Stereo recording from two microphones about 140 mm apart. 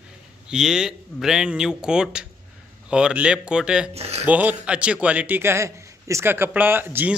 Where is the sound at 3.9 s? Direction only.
45° right (ahead or behind).